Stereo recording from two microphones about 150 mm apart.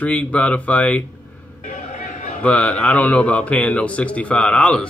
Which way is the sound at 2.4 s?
10° left (ahead or behind).